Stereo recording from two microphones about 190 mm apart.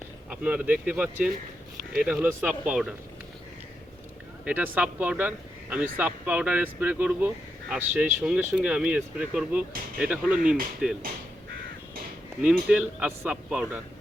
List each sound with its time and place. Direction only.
0.3 s speech: 10° right (ahead or behind)
1.8 s speech: 50° right (ahead or behind)
2.0 s speech: 5° right (ahead or behind)
4.4 s speech: 10° right (ahead or behind)
12.6 s speech: 10° right (ahead or behind)